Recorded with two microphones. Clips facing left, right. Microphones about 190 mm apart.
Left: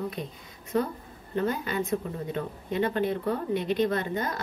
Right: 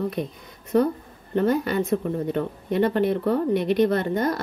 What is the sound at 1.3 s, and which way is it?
A woman's voice, 60° right (ahead or behind).